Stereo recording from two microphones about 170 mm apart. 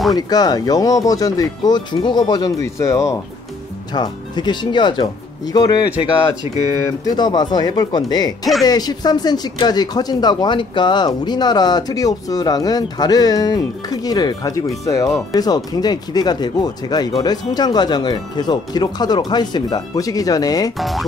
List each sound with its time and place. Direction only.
0.1 s speech: 25° left (ahead or behind)
7.1 s speech: 25° left (ahead or behind)
20.7 s speech: centre (ahead or behind)